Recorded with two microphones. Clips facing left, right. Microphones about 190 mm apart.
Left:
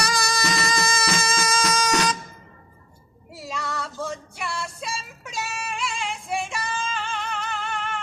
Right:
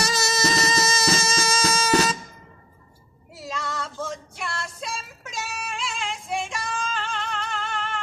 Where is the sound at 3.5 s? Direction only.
5° left (ahead or behind).